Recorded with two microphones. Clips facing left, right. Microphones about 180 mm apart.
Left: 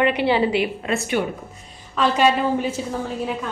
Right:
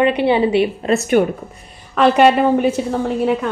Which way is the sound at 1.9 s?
60° right (ahead or behind).